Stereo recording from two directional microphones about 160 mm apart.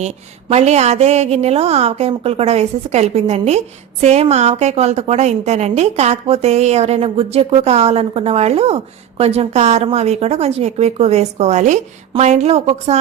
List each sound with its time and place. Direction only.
0.0 s a woman's voice: 45° right (ahead or behind)